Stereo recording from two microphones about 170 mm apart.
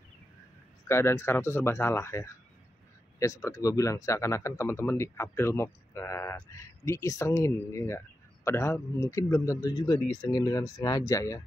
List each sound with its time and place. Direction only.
0.8 s a man's voice: 15° left (ahead or behind)